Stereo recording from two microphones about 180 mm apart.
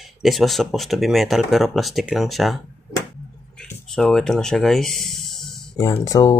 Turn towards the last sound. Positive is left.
turn(degrees=20)  # may be behind; listen again after turning